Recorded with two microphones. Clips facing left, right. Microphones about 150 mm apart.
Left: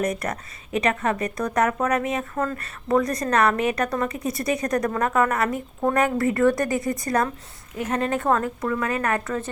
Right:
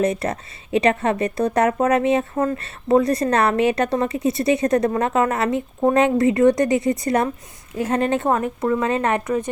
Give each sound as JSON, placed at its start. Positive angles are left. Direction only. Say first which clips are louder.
{"t": 0.0, "sound": "speech", "louder": "right 5 dB", "side_deg": -30}